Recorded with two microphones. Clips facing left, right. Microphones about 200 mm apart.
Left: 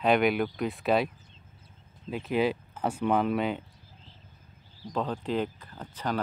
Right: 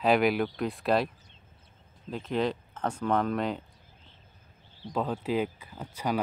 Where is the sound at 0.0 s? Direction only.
Centre (ahead or behind).